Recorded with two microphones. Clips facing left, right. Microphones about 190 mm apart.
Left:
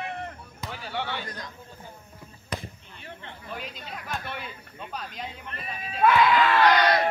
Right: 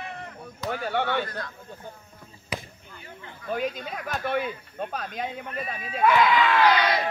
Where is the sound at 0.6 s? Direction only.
55° right (ahead or behind).